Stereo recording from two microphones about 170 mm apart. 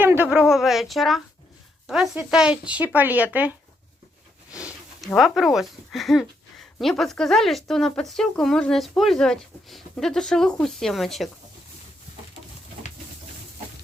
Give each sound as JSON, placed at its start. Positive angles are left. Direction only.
{"t": 0.0, "sound": "speech", "side_deg": -10}
{"t": 4.6, "sound": "speech", "side_deg": 0}